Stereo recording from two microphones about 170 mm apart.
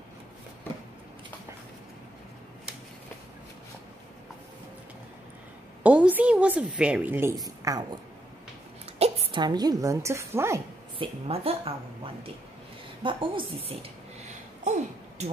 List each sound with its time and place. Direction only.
5.9 s a woman's voice: 10° right (ahead or behind)
8.9 s a woman's voice: 35° right (ahead or behind); by 10.6 s 15° right (ahead or behind)
11.0 s a woman's voice: 35° right (ahead or behind)
13.0 s a sound: 30° right (ahead or behind)